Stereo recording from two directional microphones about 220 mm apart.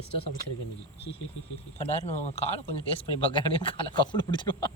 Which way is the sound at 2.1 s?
30° left (ahead or behind).